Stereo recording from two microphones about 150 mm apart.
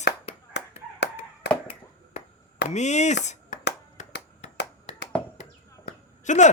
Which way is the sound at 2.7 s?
50° left (ahead or behind).